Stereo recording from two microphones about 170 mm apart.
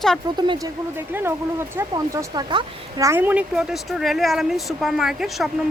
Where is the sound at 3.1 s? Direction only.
10° right (ahead or behind).